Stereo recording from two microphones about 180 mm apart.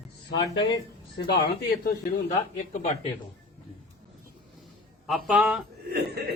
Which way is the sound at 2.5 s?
40° left (ahead or behind).